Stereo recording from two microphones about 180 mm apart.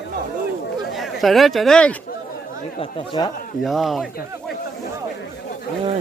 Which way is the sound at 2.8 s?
25° left (ahead or behind).